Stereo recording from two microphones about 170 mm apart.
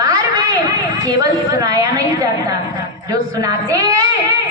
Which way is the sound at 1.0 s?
20° right (ahead or behind).